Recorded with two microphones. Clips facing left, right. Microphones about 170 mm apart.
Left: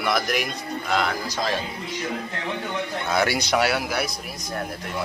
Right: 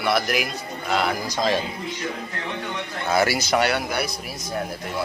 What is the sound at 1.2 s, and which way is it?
Speech, 20° right (ahead or behind).